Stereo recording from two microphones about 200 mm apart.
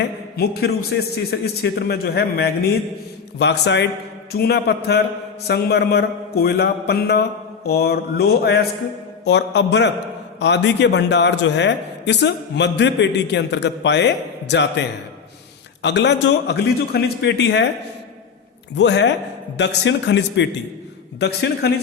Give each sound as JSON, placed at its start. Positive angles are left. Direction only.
{"t": 0.3, "sound": "a man's voice", "side_deg": 50}
{"t": 18.8, "sound": "a man's voice", "side_deg": 60}